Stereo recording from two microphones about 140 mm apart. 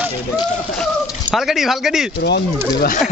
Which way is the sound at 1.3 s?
Centre (ahead or behind).